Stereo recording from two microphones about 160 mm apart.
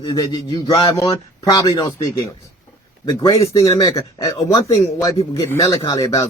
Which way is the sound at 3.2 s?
20° left (ahead or behind).